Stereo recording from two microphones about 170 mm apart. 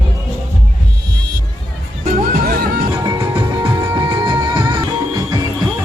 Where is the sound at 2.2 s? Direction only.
60° right (ahead or behind).